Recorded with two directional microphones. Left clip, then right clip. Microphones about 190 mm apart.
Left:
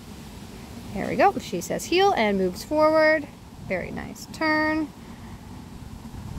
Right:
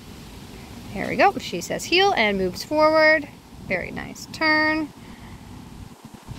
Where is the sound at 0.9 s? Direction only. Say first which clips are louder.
Right 2 dB; 5° left (ahead or behind).